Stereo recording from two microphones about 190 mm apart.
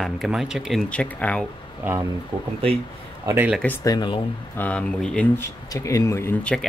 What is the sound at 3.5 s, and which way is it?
Speech, 10° left (ahead or behind).